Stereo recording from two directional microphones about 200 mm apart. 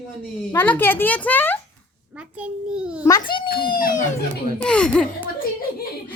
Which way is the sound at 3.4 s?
50° left (ahead or behind).